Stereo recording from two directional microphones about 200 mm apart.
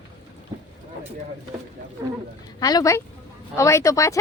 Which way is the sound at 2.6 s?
20° left (ahead or behind).